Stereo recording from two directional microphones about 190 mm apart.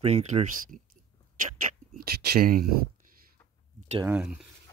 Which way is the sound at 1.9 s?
50° right (ahead or behind).